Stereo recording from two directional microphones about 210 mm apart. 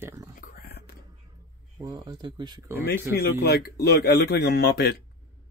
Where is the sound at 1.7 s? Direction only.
20° right (ahead or behind).